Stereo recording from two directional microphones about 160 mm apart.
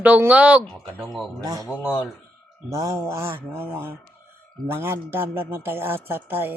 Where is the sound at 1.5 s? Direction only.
20° right (ahead or behind).